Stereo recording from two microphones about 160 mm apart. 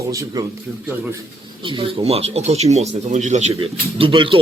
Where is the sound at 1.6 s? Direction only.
30° right (ahead or behind).